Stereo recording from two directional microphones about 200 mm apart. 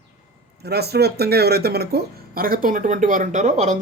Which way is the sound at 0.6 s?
55° right (ahead or behind).